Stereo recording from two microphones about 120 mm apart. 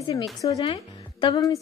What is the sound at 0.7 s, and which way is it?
Music, 45° left (ahead or behind).